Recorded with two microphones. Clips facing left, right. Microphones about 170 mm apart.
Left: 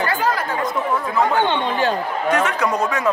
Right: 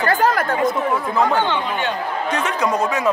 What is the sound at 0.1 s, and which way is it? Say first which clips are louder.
Chatter: right 3 dB; 45° right (ahead or behind).